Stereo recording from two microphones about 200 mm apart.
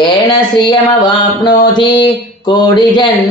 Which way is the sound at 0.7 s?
20° left (ahead or behind).